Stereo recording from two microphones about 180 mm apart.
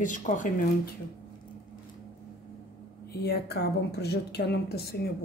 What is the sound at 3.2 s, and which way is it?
Speech, 60° left (ahead or behind).